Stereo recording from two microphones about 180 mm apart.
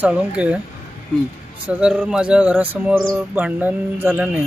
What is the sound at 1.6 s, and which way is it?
Speech, 10° right (ahead or behind).